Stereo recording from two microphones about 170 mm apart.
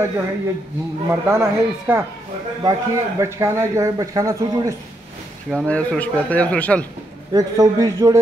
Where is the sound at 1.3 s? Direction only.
15° right (ahead or behind).